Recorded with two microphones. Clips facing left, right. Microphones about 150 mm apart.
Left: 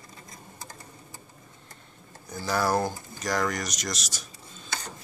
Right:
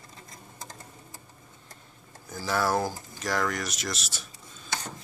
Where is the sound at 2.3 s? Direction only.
Centre (ahead or behind).